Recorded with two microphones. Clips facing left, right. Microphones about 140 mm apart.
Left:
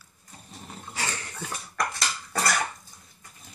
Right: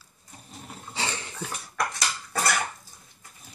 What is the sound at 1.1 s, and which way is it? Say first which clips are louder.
Dog: right 1 dB; 20° right (ahead or behind).